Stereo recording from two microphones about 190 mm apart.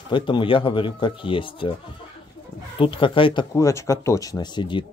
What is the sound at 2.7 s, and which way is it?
Speech, 30° left (ahead or behind).